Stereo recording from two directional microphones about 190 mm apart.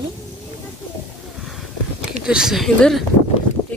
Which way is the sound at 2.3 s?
5° right (ahead or behind).